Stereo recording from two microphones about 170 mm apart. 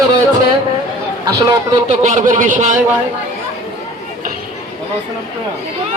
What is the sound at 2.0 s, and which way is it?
Speech, 45° right (ahead or behind).